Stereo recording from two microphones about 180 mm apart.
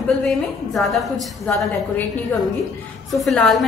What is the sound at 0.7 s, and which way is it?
A woman's voice, centre (ahead or behind).